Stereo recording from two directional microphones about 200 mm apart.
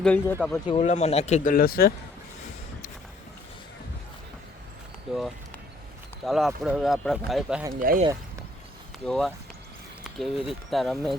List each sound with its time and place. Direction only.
0.0 s speech: 10° left (ahead or behind)
0.8 s speech: 35° left (ahead or behind)
6.2 s speech: centre (ahead or behind)
7.7 s speech: 45° right (ahead or behind)
9.0 s speech: centre (ahead or behind)